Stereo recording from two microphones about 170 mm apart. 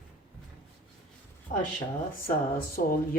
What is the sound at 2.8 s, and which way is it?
Speech, 65° left (ahead or behind).